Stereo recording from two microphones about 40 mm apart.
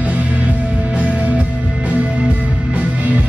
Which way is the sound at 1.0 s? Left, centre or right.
Right.